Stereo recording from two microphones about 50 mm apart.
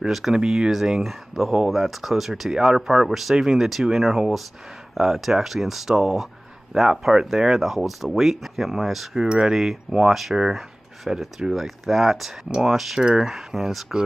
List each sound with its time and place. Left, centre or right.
0.3 s speech: centre
1.0 s speech: centre